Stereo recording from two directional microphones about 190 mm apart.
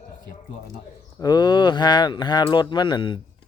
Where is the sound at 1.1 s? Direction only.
20° left (ahead or behind).